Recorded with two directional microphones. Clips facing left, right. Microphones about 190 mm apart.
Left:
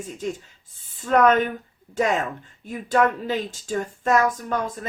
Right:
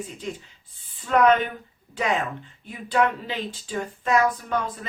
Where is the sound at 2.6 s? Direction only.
45° left (ahead or behind).